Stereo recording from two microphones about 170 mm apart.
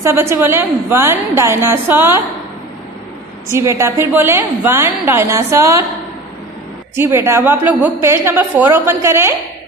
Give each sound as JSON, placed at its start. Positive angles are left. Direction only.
{"t": 0.0, "sound": "a woman's voice", "side_deg": -15}
{"t": 3.4, "sound": "a woman's voice", "side_deg": -15}
{"t": 7.0, "sound": "a woman's voice", "side_deg": -15}